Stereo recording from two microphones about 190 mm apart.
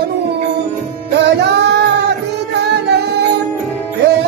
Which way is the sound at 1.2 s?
60° right (ahead or behind).